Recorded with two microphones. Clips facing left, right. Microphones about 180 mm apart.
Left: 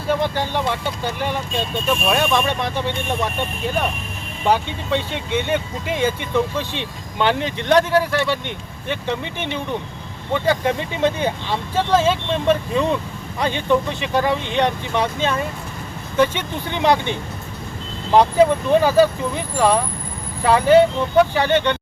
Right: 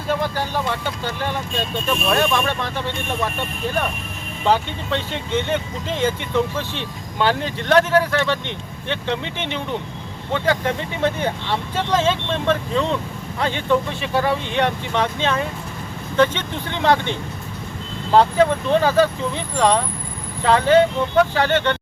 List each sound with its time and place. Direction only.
0.1 s speech: 20° left (ahead or behind)
4.4 s speech: 15° left (ahead or behind)